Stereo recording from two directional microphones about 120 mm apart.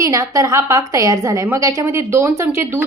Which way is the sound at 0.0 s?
25° right (ahead or behind).